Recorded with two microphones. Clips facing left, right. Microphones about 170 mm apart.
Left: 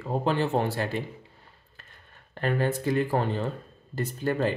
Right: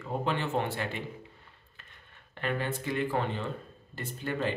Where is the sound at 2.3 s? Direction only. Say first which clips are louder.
Left 6 dB; 40° left (ahead or behind).